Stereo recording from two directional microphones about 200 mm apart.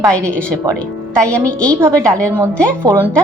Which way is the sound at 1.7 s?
10° right (ahead or behind).